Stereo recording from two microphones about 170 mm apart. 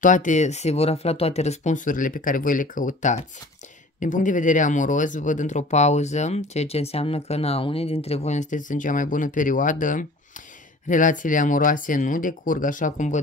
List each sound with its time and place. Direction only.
0.0 s speech: 50° left (ahead or behind)